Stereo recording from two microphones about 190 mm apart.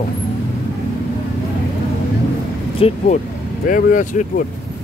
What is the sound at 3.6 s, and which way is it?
Speech, 45° left (ahead or behind).